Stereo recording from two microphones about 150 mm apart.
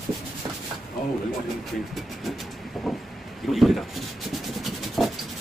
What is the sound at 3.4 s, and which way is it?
Rub, centre (ahead or behind).